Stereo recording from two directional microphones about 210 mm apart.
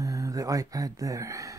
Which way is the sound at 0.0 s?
15° right (ahead or behind).